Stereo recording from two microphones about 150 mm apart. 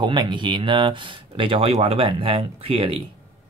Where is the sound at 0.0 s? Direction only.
30° right (ahead or behind).